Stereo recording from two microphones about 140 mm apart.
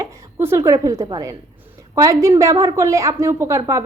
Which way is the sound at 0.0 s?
20° right (ahead or behind).